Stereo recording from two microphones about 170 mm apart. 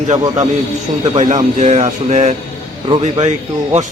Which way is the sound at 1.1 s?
45° right (ahead or behind).